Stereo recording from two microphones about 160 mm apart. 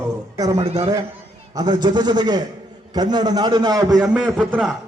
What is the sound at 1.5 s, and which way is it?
A man's voice, 25° right (ahead or behind).